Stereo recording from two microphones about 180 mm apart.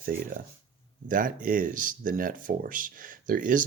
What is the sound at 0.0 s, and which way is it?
Speech, 50° right (ahead or behind).